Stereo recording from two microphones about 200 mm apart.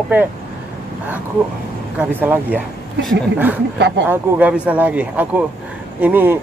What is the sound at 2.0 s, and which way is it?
Speech, 10° right (ahead or behind).